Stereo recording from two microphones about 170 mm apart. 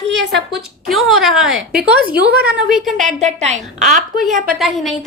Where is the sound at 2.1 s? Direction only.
65° right (ahead or behind).